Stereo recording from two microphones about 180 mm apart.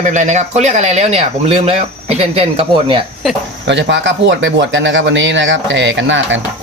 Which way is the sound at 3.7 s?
85° right.